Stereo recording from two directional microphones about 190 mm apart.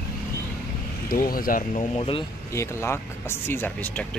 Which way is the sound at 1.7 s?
30° left (ahead or behind).